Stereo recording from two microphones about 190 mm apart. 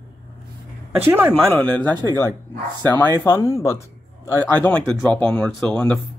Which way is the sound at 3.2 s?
15° left (ahead or behind).